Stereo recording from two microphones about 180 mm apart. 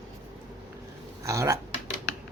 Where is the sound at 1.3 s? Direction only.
15° right (ahead or behind).